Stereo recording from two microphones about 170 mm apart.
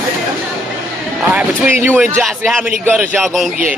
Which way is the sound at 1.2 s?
5° right (ahead or behind).